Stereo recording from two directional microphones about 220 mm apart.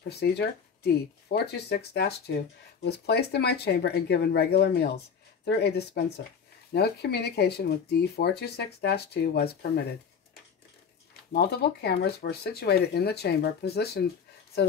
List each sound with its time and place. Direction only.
0.1 s speech: 50° left (ahead or behind)
11.3 s speech: 45° left (ahead or behind)